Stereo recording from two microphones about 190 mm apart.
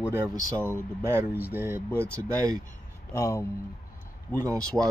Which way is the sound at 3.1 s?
15° left (ahead or behind).